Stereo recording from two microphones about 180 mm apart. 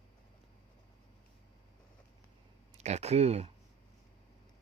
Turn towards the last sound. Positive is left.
turn(degrees=-35)  # may be behind; listen again after turning